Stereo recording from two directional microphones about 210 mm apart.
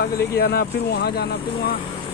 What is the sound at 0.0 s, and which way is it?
Speech, 45° left (ahead or behind).